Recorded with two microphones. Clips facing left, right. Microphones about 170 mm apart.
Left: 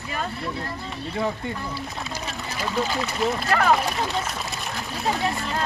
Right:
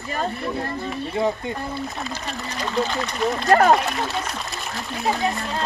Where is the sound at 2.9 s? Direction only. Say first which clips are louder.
Right 1 dB; 5° left (ahead or behind).